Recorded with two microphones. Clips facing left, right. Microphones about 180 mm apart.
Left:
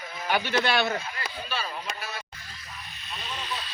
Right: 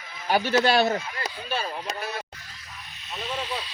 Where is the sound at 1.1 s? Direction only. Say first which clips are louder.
Right 3 dB; 45° right (ahead or behind).